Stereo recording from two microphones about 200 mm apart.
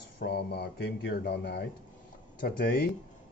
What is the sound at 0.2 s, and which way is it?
Speech, 55° left (ahead or behind).